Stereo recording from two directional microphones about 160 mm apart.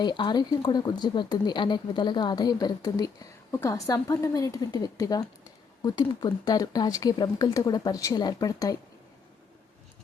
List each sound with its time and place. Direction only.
0.0 s speech: 30° left (ahead or behind)